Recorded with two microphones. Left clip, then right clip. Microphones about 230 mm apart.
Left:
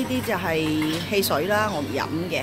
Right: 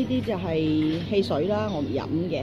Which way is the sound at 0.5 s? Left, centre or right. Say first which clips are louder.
Left 1 dB; left.